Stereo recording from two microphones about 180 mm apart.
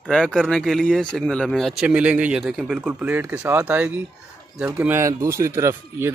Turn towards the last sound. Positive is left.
turn(degrees=-15)  # may be behind; listen again after turning